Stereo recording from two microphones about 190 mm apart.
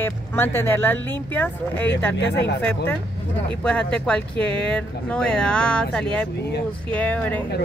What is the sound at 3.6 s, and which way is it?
Speech, 5° left (ahead or behind).